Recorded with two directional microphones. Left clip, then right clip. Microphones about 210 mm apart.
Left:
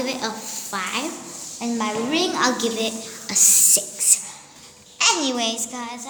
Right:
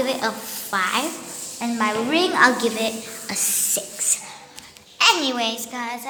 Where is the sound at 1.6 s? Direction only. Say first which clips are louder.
Right 3 dB; 15° left (ahead or behind).